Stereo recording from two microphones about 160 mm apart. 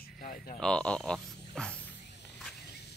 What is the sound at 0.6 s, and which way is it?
Speech, 5° left (ahead or behind).